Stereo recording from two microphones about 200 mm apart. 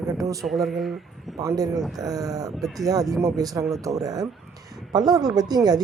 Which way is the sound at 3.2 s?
15° right (ahead or behind).